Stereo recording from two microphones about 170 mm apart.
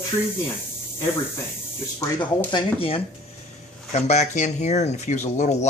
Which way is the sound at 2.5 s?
30° left (ahead or behind).